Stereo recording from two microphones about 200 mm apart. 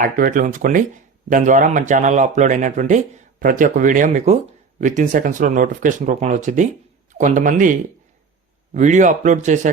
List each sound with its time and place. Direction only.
0.0 s speech: 45° right (ahead or behind)